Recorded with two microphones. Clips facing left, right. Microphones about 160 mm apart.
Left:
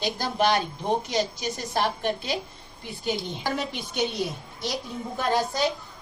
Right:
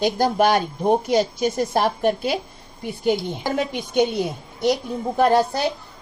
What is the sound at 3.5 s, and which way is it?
A woman's voice, 55° right (ahead or behind).